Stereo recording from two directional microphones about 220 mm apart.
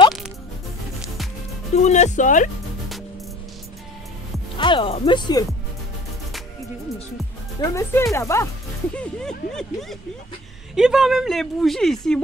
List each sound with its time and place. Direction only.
1.7 s speech: 30° left (ahead or behind)
4.6 s speech: 20° left (ahead or behind)
7.7 s a woman's voice: 15° left (ahead or behind)